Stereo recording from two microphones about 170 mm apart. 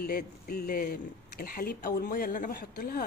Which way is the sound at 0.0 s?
60° left (ahead or behind).